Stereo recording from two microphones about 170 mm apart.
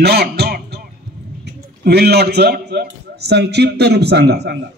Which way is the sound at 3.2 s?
75° right (ahead or behind).